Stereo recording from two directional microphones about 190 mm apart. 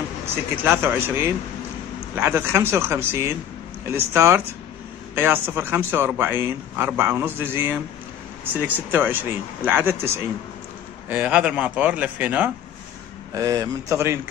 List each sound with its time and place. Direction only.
0.7 s speech: 10° right (ahead or behind)
13.3 s speech: 20° right (ahead or behind)